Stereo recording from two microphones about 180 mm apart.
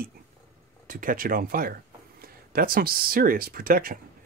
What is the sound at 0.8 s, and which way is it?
Speech, 50° right (ahead or behind).